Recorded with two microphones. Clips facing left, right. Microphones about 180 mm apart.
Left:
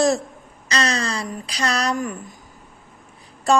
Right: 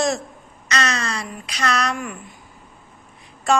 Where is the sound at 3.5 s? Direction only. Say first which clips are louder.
Left 2 dB; 35° left (ahead or behind).